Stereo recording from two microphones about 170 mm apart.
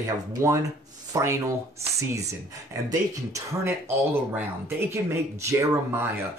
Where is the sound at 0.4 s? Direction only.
15° right (ahead or behind).